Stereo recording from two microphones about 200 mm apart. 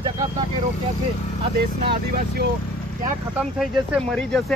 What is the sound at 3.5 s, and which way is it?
Speech, centre (ahead or behind).